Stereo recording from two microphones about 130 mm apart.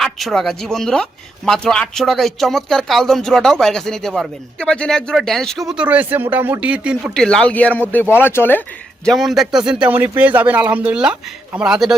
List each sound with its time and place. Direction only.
0.0 s speech: centre (ahead or behind)
7.1 s speech: 5° left (ahead or behind)
9.0 s a man's voice: centre (ahead or behind)